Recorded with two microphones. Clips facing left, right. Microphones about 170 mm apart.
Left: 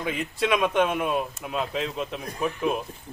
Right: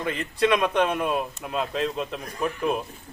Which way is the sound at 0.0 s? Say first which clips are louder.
Right 3 dB; 5° left (ahead or behind).